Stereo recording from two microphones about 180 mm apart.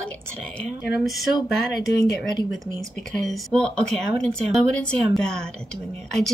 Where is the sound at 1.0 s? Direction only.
Centre (ahead or behind).